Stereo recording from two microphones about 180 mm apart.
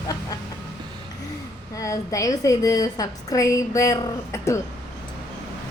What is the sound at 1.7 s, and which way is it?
A woman's voice, 20° left (ahead or behind).